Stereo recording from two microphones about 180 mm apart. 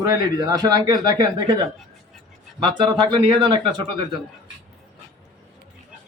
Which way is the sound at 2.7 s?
25° right (ahead or behind).